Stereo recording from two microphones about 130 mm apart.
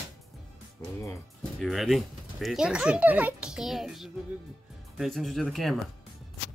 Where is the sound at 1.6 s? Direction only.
Centre (ahead or behind).